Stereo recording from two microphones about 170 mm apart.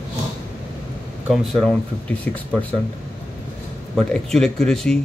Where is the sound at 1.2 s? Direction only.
Centre (ahead or behind).